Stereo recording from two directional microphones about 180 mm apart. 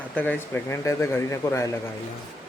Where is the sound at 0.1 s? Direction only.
10° left (ahead or behind).